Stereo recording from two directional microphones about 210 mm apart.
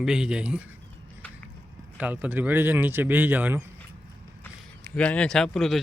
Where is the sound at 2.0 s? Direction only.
5° right (ahead or behind).